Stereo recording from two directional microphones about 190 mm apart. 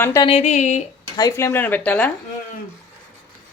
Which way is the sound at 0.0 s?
15° left (ahead or behind).